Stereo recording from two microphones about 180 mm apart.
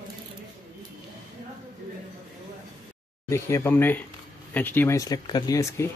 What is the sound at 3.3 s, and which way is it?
Speech, 15° left (ahead or behind).